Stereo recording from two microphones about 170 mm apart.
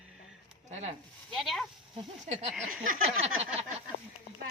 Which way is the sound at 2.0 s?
40° right (ahead or behind).